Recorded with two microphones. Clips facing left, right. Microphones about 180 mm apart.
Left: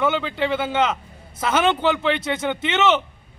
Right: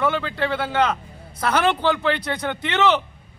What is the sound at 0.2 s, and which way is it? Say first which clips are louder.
Speech: left 1 dB; centre (ahead or behind).